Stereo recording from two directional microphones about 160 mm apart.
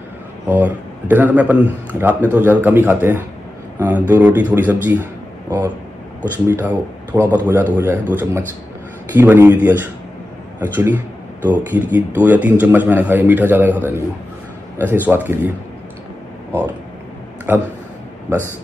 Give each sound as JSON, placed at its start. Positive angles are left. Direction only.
{"t": 0.5, "sound": "a man's voice", "side_deg": -10}
{"t": 6.5, "sound": "a man's voice", "side_deg": -10}
{"t": 7.3, "sound": "a man's voice", "side_deg": -20}
{"t": 17.5, "sound": "a man's voice", "side_deg": -10}